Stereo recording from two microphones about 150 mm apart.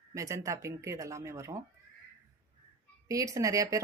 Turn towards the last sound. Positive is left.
turn(degrees=-20)  # may be behind; listen again after turning